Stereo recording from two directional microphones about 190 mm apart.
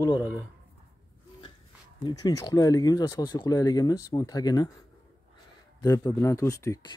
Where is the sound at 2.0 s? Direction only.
20° left (ahead or behind).